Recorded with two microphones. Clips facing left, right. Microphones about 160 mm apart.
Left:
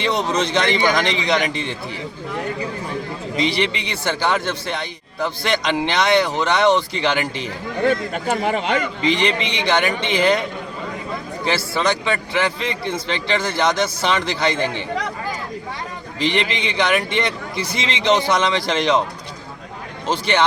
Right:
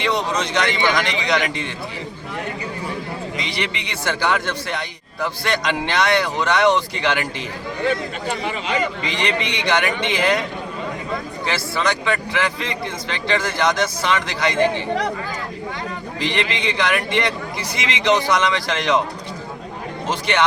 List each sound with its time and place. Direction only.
0.3 s speech: 30° left (ahead or behind)
3.3 s speech: 30° left (ahead or behind)
7.9 s speech: 45° left (ahead or behind)
9.2 s speech: 30° left (ahead or behind)
11.4 s speech: 30° left (ahead or behind)
16.2 s speech: 25° left (ahead or behind)
20.1 s speech: 30° left (ahead or behind)